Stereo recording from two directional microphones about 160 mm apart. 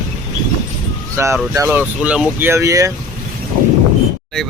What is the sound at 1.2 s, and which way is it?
Speech, 15° right (ahead or behind).